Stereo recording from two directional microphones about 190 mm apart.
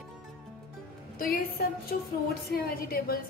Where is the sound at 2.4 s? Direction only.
55° left (ahead or behind).